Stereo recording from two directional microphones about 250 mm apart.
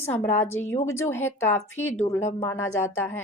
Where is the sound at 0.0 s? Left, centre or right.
Centre.